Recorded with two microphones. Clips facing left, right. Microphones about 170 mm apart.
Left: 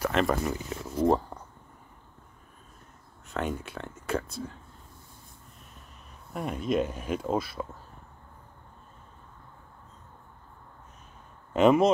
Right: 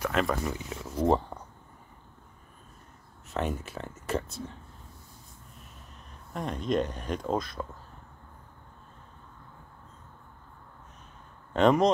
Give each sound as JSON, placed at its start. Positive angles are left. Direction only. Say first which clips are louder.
{"t": 0.0, "sound": "speech", "louder": "left 2 dB", "side_deg": 0}
{"t": 3.3, "sound": "speech", "louder": "even", "side_deg": 0}
{"t": 6.3, "sound": "speech", "louder": "left 1 dB", "side_deg": 10}
{"t": 11.5, "sound": "speech", "louder": "left 2 dB", "side_deg": 5}